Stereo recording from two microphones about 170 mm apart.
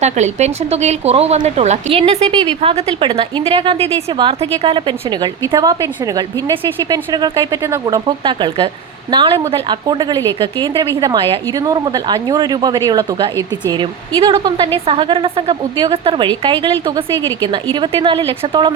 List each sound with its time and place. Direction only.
0.0 s speech: 40° right (ahead or behind)
17.7 s speech: 30° right (ahead or behind)